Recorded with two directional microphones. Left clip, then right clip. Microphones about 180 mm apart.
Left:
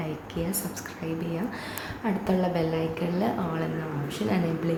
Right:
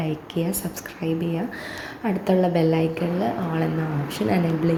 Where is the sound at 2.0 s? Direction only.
15° right (ahead or behind).